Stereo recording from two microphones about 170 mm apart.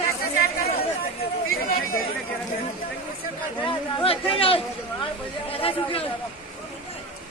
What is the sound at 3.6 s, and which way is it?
Chatter, 35° left (ahead or behind).